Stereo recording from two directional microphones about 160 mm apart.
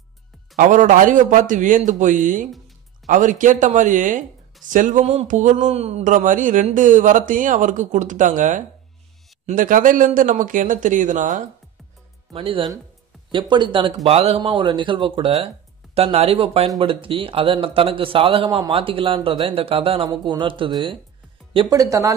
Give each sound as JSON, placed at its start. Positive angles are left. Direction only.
{"t": 0.6, "sound": "speech", "side_deg": -50}
{"t": 12.3, "sound": "speech", "side_deg": -30}